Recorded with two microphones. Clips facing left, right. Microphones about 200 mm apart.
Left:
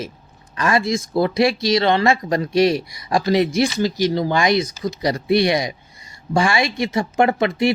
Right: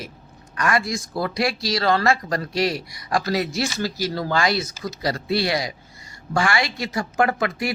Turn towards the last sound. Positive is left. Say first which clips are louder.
# left 6 dB
turn(degrees=25)  # may be behind; listen again after turning